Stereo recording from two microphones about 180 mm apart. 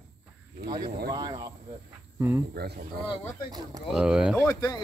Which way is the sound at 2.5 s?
65° right (ahead or behind).